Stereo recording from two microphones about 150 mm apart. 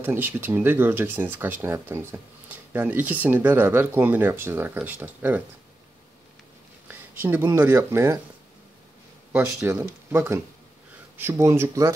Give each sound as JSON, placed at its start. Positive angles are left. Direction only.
{"t": 0.0, "sound": "speech", "side_deg": -15}
{"t": 6.9, "sound": "a sound", "side_deg": -15}
{"t": 7.5, "sound": "speech", "side_deg": -15}
{"t": 9.3, "sound": "speech", "side_deg": -15}